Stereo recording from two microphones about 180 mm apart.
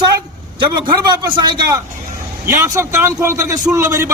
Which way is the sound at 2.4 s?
15° right (ahead or behind).